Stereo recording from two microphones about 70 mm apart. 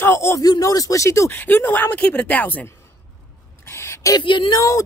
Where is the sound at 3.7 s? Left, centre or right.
Left.